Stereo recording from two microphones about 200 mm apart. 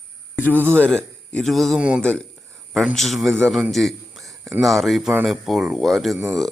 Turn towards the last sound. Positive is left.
turn(degrees=0)  # may be behind; listen again after turning